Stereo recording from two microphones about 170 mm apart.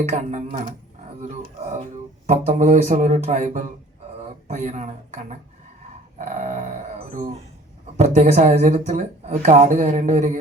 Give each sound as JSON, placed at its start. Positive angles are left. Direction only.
{"t": 0.0, "sound": "speech", "side_deg": -40}
{"t": 2.2, "sound": "speech", "side_deg": -45}
{"t": 7.9, "sound": "speech", "side_deg": -40}